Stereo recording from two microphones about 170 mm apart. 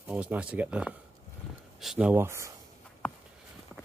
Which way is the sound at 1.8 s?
5° right (ahead or behind).